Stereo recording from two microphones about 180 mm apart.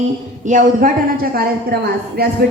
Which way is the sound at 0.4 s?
45° right (ahead or behind).